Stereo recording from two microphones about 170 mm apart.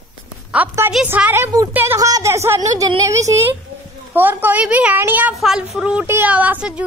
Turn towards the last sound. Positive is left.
turn(degrees=-10)  # may be behind; listen again after turning